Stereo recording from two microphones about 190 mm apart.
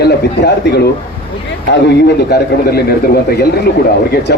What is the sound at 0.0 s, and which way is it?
Speech, 60° left (ahead or behind).